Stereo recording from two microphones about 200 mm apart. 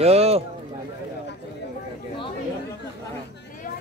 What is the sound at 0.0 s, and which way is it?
Speech, 30° right (ahead or behind).